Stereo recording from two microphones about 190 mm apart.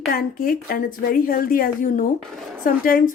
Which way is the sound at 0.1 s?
50° left (ahead or behind).